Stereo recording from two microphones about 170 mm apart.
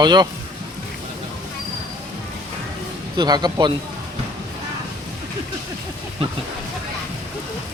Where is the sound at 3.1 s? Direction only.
25° right (ahead or behind).